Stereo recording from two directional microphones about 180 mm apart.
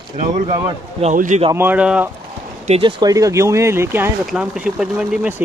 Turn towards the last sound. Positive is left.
turn(degrees=-5)  # may be behind; listen again after turning